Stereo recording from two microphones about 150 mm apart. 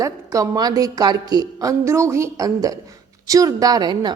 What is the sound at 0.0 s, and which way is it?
A woman's voice, 20° right (ahead or behind).